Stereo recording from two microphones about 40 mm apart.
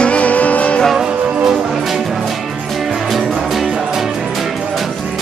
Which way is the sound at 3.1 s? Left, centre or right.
Centre.